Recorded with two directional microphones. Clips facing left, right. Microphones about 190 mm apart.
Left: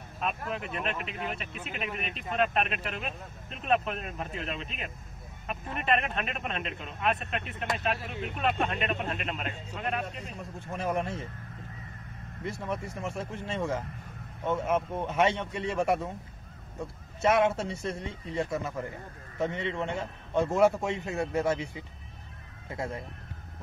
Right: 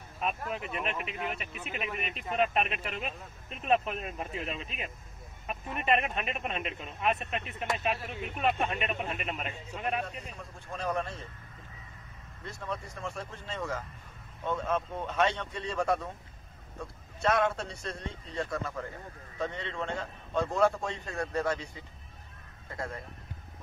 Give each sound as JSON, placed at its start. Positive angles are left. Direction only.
{"t": 0.2, "sound": "speech", "side_deg": -5}
{"t": 10.3, "sound": "speech", "side_deg": 15}
{"t": 12.4, "sound": "a man's voice", "side_deg": 20}
{"t": 13.6, "sound": "a man's voice", "side_deg": 25}
{"t": 17.2, "sound": "a man's voice", "side_deg": 20}